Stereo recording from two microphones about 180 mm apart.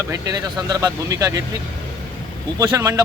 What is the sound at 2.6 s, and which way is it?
Speech, 20° right (ahead or behind).